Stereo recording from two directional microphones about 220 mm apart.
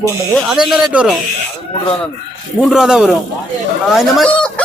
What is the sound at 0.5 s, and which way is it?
Speech, 5° right (ahead or behind).